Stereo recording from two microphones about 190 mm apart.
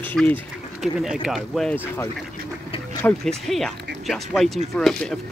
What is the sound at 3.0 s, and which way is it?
Speech, 5° left (ahead or behind).